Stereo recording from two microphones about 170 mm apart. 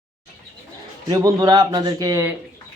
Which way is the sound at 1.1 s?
20° right (ahead or behind).